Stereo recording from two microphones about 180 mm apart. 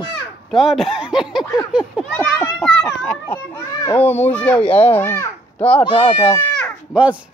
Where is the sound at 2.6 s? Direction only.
5° left (ahead or behind).